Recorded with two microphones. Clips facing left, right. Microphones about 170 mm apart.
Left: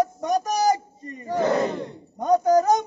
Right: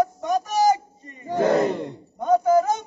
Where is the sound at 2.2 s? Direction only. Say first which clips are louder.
Even; 40° left (ahead or behind).